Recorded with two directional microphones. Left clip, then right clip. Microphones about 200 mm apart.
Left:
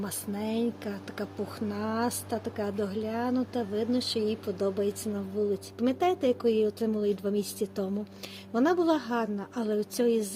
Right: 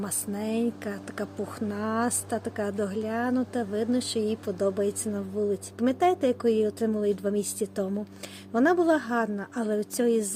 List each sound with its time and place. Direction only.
0.0 s speech: 15° right (ahead or behind)